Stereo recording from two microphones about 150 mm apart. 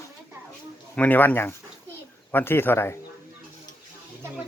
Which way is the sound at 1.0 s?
10° left (ahead or behind).